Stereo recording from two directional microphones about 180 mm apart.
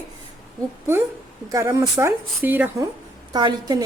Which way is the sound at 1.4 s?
20° right (ahead or behind).